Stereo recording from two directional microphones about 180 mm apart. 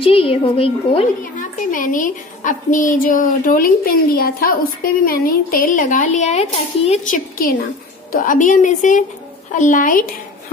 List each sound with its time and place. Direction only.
0.0 s a woman's voice: 30° left (ahead or behind)
1.2 s a woman's voice: 50° left (ahead or behind)
8.1 s a woman's voice: 50° left (ahead or behind)